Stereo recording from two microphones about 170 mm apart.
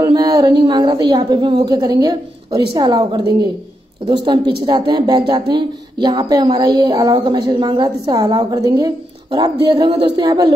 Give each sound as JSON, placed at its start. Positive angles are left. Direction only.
{"t": 0.0, "sound": "speech", "side_deg": -25}